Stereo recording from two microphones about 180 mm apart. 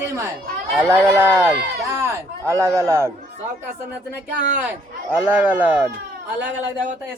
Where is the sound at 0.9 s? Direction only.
15° right (ahead or behind).